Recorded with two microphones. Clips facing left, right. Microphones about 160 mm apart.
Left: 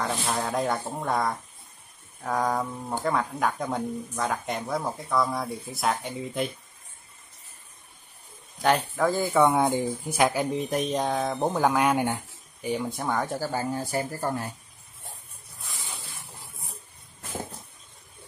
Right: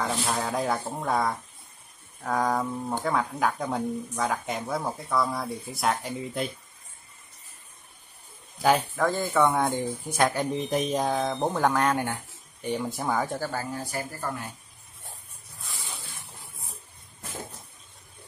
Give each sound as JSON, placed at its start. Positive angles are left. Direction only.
{"t": 0.0, "sound": "speech", "side_deg": 0}
{"t": 8.5, "sound": "speech", "side_deg": 0}
{"t": 12.6, "sound": "speech", "side_deg": 0}
{"t": 13.5, "sound": "speech", "side_deg": 25}